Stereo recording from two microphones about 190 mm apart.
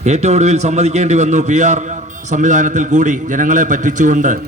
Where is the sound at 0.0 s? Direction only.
35° right (ahead or behind).